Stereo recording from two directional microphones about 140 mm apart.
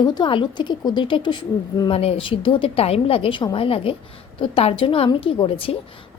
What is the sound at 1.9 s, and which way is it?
A woman's voice, 45° left (ahead or behind).